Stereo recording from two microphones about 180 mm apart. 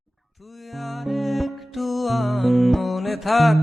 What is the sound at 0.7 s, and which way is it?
Music, centre (ahead or behind).